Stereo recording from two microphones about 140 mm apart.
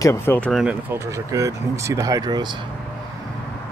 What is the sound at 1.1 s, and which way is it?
Speech, 25° right (ahead or behind).